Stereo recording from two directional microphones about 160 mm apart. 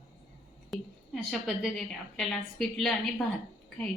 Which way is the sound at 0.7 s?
Centre (ahead or behind).